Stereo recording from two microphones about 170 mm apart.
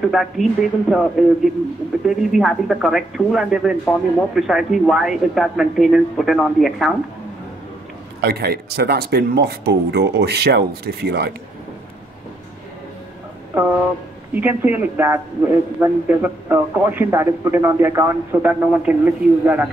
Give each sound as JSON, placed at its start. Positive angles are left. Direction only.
{"t": 0.1, "sound": "a man's voice", "side_deg": 0}
{"t": 8.2, "sound": "speech", "side_deg": -65}
{"t": 13.5, "sound": "a man's voice", "side_deg": -15}